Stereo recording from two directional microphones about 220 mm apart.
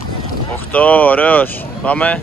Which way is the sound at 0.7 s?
5° left (ahead or behind).